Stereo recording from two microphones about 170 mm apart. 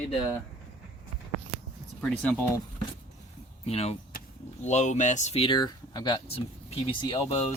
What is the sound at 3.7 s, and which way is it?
Speech, 35° left (ahead or behind).